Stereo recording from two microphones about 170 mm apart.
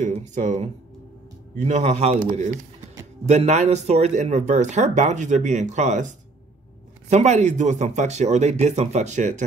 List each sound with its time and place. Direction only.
0.0 s speech: 45° right (ahead or behind)